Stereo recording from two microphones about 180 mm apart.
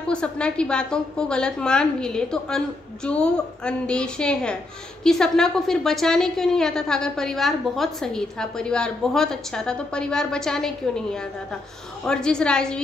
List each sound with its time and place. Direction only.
0.1 s a woman's voice: 5° left (ahead or behind)